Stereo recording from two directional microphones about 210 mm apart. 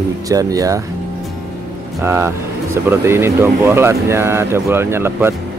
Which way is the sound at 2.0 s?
10° right (ahead or behind).